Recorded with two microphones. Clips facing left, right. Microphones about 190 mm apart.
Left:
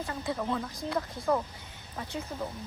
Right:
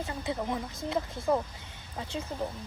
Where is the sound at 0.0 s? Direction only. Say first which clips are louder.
Even; 15° right (ahead or behind).